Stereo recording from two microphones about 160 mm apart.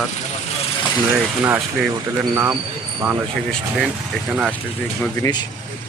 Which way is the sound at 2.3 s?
15° right (ahead or behind).